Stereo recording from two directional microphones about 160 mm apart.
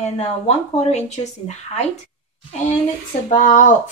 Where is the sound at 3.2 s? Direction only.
55° left (ahead or behind).